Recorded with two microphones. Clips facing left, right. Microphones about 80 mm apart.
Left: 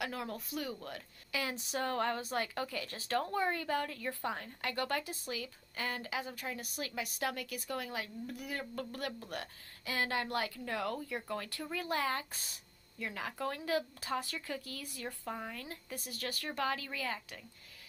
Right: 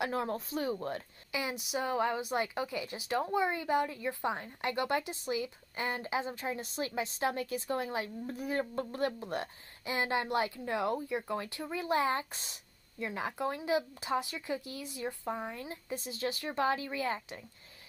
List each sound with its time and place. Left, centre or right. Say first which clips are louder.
0.0 s speech: right 6 dB; right
1.4 s speech: right 2 dB; centre; by 17.5 s right